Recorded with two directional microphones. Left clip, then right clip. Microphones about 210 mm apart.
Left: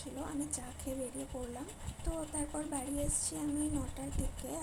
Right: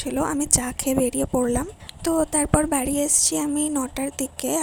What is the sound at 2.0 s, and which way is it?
Speech, 50° right (ahead or behind).